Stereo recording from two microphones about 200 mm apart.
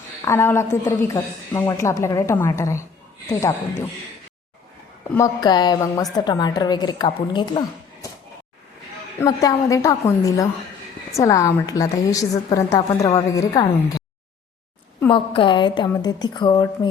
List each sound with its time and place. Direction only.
0.3 s a woman's voice: 15° left (ahead or behind)
5.1 s a woman's voice: 15° left (ahead or behind)
9.1 s a woman's voice: 15° left (ahead or behind)
15.1 s a woman's voice: 25° left (ahead or behind)